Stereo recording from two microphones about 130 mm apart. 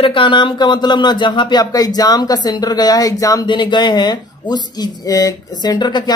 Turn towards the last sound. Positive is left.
turn(degrees=35)  # may be behind; listen again after turning